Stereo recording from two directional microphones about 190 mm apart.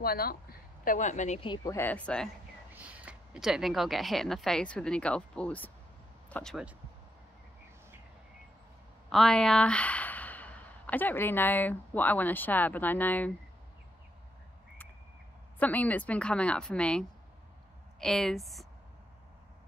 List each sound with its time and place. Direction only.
0.0 s a woman's voice: 50° left (ahead or behind)
1.4 s speech: 25° left (ahead or behind)
1.8 s speech: 10° left (ahead or behind)
2.7 s a woman's voice: 5° right (ahead or behind)
9.1 s speech: 5° left (ahead or behind)
15.6 s a woman's voice: 10° left (ahead or behind)